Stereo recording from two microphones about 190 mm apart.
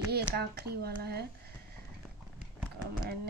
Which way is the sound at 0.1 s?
55° right (ahead or behind).